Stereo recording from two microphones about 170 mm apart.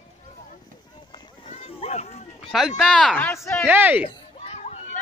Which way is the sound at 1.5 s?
40° left (ahead or behind).